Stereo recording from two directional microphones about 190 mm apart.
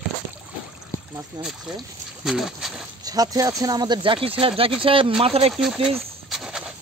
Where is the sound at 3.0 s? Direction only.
20° right (ahead or behind).